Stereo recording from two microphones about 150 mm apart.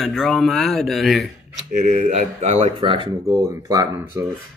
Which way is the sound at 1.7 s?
55° right (ahead or behind).